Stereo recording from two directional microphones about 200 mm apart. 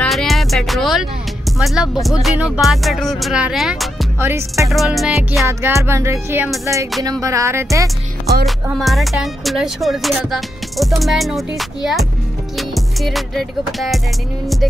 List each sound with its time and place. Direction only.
0.0 s music: centre (ahead or behind)
1.6 s speech: centre (ahead or behind)
4.2 s music: 10° right (ahead or behind)
4.6 s speech: centre (ahead or behind)
5.5 s music: 15° right (ahead or behind)
8.6 s speech: centre (ahead or behind)
12.5 s music: centre (ahead or behind)